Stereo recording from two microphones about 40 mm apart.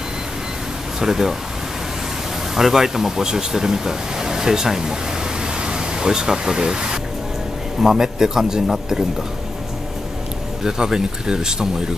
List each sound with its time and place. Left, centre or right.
1.0 s speech: centre
2.5 s speech: centre
5.6 s pink noise: right
7.8 s speech: centre
10.6 s speech: centre